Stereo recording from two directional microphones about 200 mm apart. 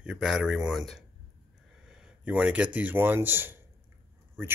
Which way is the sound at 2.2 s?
5° right (ahead or behind).